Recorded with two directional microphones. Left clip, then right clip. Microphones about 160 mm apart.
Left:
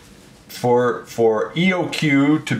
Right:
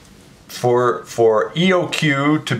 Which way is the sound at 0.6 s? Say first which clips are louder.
Right 1 dB; 25° right (ahead or behind).